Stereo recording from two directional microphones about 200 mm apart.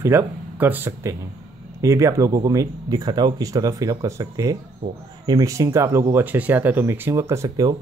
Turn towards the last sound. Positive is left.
turn(degrees=-15)  # may be behind; listen again after turning